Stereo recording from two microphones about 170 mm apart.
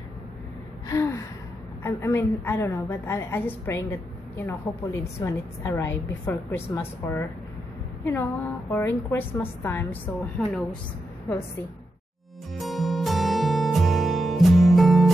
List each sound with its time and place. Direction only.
0.8 s gasp: 15° left (ahead or behind)
1.8 s a woman's voice: 15° left (ahead or behind)
12.5 s music: centre (ahead or behind)